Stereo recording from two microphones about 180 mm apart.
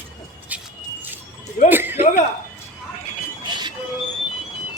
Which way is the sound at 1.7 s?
10° right (ahead or behind).